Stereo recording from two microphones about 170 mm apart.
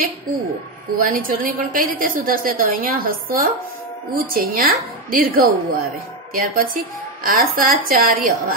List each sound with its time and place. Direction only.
1.0 s a woman's voice: 55° right (ahead or behind)